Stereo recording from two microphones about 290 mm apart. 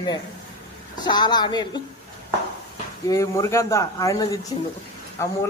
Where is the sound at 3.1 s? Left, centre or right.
Centre.